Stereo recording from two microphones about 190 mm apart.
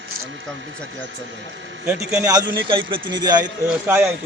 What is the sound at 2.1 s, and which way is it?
A man's voice, 20° right (ahead or behind).